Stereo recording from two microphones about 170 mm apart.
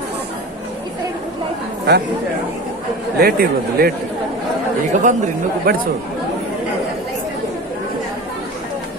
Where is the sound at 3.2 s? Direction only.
65° right (ahead or behind).